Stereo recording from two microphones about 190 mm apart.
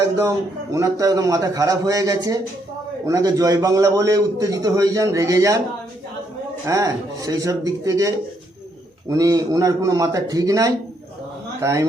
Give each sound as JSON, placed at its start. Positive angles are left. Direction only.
{"t": 0.2, "sound": "a man's voice", "side_deg": -15}
{"t": 6.7, "sound": "a man's voice", "side_deg": -15}